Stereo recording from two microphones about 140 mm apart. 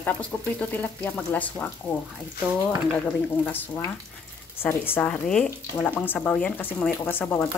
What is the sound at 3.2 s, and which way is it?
Speech, 10° left (ahead or behind).